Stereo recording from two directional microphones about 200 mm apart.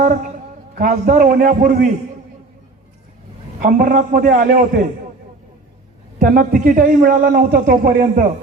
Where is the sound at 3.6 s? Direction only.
40° right (ahead or behind).